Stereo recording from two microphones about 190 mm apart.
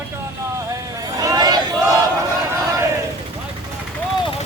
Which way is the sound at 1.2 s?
20° right (ahead or behind).